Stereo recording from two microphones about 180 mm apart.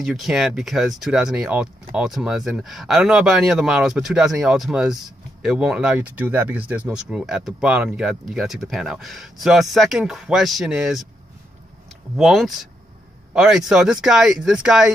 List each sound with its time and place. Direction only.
0.0 s speech: centre (ahead or behind)
12.2 s speech: centre (ahead or behind)